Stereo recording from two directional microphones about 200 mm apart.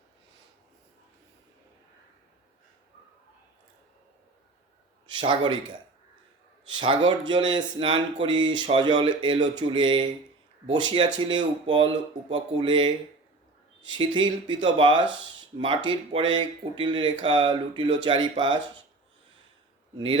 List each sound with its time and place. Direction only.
5.0 s a man's voice: 25° right (ahead or behind)